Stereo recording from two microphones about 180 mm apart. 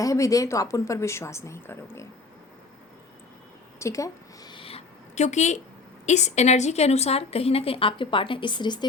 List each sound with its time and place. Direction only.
0.0 s speech: 20° left (ahead or behind)
3.8 s a sound: 15° left (ahead or behind); by 5.5 s 40° left (ahead or behind)
6.1 s a woman's voice: 40° left (ahead or behind)